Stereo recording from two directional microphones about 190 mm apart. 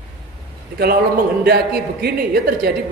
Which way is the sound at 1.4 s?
55° right (ahead or behind).